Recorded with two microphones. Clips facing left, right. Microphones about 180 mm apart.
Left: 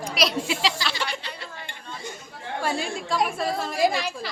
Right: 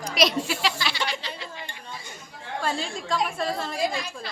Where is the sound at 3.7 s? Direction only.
90° left.